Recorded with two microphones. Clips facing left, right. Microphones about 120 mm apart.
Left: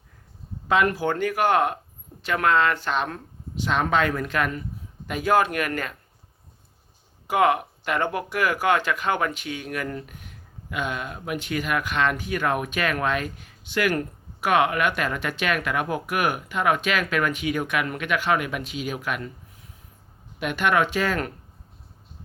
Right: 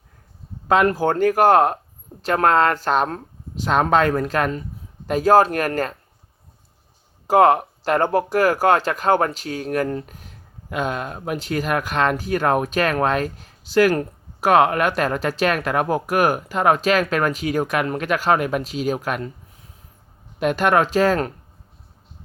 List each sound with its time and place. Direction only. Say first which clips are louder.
0.7 s speech: right 5 dB; 40° right (ahead or behind)
7.3 s speech: right 6 dB; 40° right (ahead or behind)
20.4 s speech: right 5 dB; 40° right (ahead or behind)